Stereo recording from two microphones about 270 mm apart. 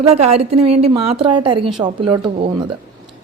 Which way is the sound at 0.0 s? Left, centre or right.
Right.